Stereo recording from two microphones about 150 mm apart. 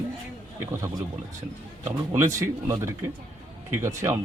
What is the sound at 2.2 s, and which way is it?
Speech, 20° right (ahead or behind).